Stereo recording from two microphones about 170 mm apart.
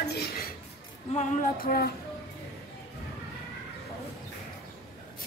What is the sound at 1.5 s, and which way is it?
Speech, 60° left (ahead or behind).